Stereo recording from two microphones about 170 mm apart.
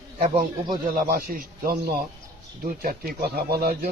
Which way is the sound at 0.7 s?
55° right (ahead or behind).